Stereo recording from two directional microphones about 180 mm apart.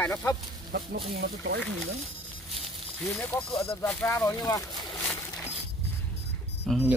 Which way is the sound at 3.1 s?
10° left (ahead or behind).